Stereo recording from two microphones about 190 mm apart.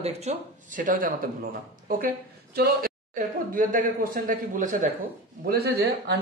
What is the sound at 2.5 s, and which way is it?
Speech, 50° right (ahead or behind).